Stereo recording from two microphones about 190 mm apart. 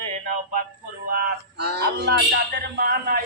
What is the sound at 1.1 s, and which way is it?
Speech, 55° right (ahead or behind).